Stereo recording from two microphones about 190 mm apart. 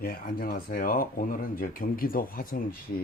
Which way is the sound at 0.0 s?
50° left (ahead or behind).